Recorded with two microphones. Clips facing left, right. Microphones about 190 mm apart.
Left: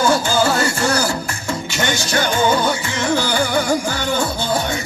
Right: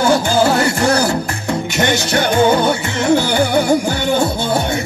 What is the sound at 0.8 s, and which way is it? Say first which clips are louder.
Music: right 5 dB; 60° right (ahead or behind).